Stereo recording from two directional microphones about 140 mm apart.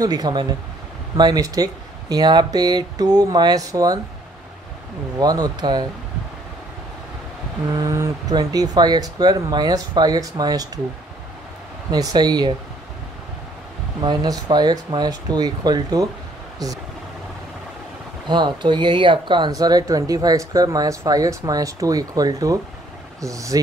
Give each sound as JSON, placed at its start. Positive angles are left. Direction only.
{"t": 0.0, "sound": "speech", "side_deg": -30}
{"t": 5.2, "sound": "speech", "side_deg": -30}
{"t": 7.7, "sound": "speech", "side_deg": -25}
{"t": 11.9, "sound": "speech", "side_deg": -30}
{"t": 14.0, "sound": "speech", "side_deg": -30}
{"t": 18.3, "sound": "speech", "side_deg": -35}